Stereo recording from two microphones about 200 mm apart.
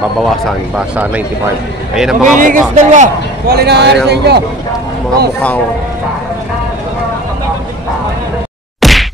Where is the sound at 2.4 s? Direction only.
40° right (ahead or behind).